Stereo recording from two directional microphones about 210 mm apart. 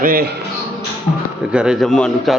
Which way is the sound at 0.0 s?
45° right (ahead or behind).